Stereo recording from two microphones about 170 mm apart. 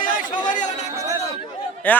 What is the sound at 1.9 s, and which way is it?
Speech, 10° left (ahead or behind).